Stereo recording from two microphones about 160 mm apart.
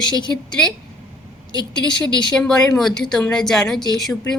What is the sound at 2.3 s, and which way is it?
Speech, 5° left (ahead or behind).